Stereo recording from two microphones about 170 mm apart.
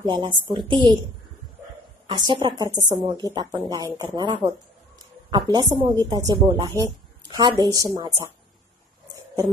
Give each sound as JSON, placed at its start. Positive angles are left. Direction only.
{"t": 0.0, "sound": "a woman's voice", "side_deg": -30}
{"t": 2.0, "sound": "a woman's voice", "side_deg": -25}